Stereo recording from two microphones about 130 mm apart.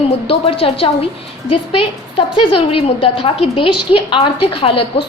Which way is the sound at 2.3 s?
45° left (ahead or behind).